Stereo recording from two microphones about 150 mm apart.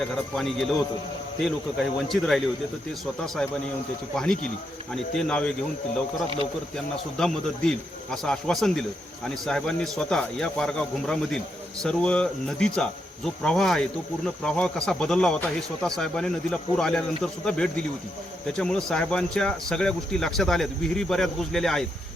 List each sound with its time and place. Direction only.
0.3 s speech: centre (ahead or behind)
4.1 s speech: 5° left (ahead or behind)
7.2 s speech: 5° left (ahead or behind)